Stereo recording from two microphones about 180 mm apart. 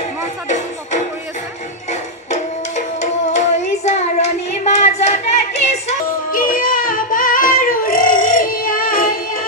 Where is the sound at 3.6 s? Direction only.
40° left (ahead or behind).